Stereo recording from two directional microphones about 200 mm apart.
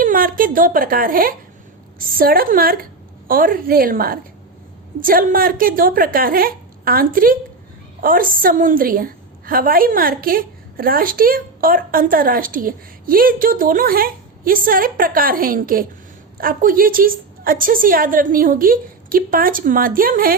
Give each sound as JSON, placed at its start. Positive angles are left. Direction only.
{"t": 0.0, "sound": "a woman's voice", "side_deg": -45}